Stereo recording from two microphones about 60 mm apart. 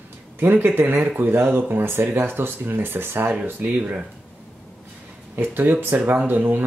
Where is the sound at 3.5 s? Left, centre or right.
Right.